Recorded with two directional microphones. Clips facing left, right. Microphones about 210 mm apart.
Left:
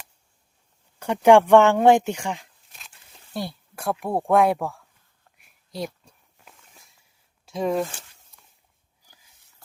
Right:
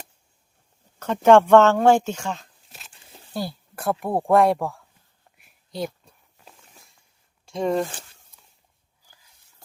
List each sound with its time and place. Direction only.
0.9 s speech: 15° left (ahead or behind)
3.3 s speech: centre (ahead or behind)
5.4 s a sound: centre (ahead or behind)
7.4 s speech: centre (ahead or behind)